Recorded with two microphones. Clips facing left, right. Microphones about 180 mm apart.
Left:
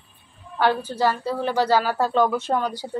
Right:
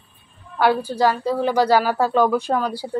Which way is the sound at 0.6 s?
10° right (ahead or behind).